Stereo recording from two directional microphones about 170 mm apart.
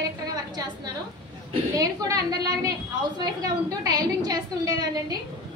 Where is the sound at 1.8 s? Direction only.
20° right (ahead or behind).